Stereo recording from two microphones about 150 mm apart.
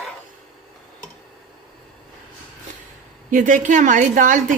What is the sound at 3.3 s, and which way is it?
A woman's voice, 60° right (ahead or behind).